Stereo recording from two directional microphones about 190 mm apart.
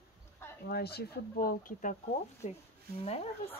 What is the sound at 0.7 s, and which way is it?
Speech, 55° left (ahead or behind).